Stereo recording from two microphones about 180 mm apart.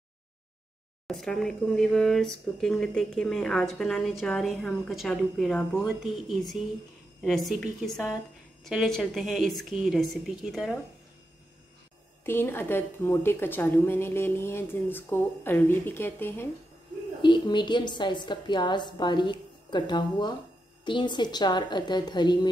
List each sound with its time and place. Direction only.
1.0 s speech: centre (ahead or behind)
12.3 s a woman's voice: 10° left (ahead or behind)
17.2 s a woman's voice: 25° left (ahead or behind)